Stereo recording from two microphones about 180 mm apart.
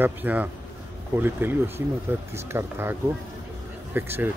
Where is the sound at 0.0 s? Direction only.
10° right (ahead or behind).